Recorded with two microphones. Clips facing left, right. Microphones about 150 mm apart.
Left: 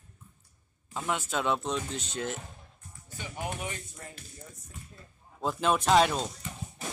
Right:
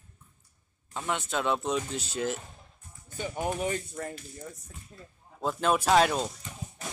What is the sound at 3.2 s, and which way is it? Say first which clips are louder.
Speech: right 6 dB; 45° right (ahead or behind).